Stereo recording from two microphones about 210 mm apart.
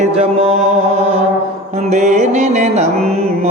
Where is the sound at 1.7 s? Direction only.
35° right (ahead or behind).